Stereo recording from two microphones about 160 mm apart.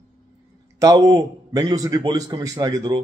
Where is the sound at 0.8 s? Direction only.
20° right (ahead or behind).